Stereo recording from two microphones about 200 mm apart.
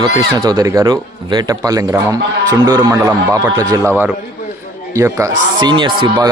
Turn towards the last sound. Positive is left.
turn(degrees=-25)  # may be behind; listen again after turning